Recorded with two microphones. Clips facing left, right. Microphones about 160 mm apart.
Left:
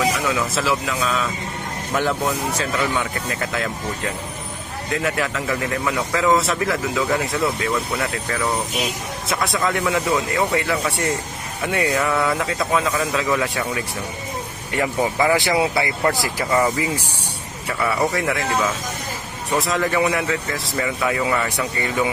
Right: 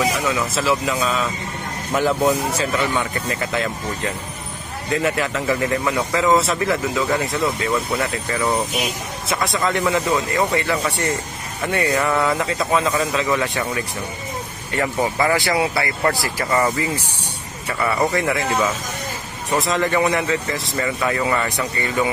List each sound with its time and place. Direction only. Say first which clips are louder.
0.0 s speech: even; centre (ahead or behind)
2.6 s speech: right 1 dB; centre (ahead or behind)
4.9 s speech: right 2 dB; centre (ahead or behind)
9.3 s speech: right 1 dB; centre (ahead or behind); by 16.4 s 20° left (ahead or behind)
16.5 s speech: even; 10° left (ahead or behind)
19.5 s speech: right 1 dB; centre (ahead or behind)